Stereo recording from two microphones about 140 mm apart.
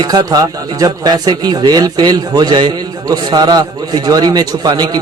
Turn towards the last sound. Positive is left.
turn(degrees=-30)  # may be behind; listen again after turning